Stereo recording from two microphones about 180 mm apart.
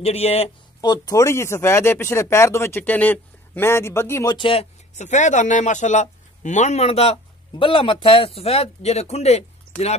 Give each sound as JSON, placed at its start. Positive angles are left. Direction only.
{"t": 0.0, "sound": "speech", "side_deg": 35}
{"t": 0.7, "sound": "speech", "side_deg": 20}